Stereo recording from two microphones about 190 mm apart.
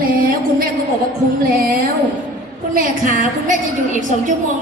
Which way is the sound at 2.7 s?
45° right (ahead or behind).